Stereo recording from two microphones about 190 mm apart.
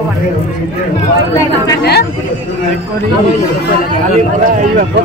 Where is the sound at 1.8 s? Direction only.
60° left (ahead or behind).